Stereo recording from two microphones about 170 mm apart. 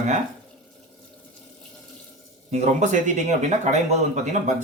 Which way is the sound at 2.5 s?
45° right (ahead or behind).